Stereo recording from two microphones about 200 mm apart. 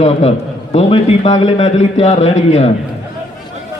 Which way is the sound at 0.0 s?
30° left (ahead or behind).